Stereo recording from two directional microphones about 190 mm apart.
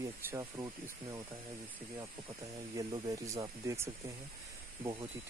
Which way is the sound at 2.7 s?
20° right (ahead or behind).